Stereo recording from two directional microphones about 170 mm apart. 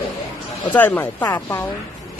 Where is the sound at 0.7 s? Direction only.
10° left (ahead or behind).